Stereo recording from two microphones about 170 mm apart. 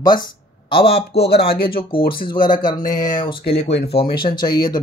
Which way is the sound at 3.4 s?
70° left (ahead or behind).